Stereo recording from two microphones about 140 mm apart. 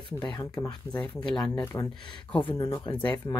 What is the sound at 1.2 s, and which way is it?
Speech, 30° left (ahead or behind).